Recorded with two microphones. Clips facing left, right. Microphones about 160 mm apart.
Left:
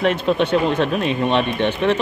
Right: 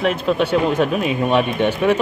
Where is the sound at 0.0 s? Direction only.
5° right (ahead or behind).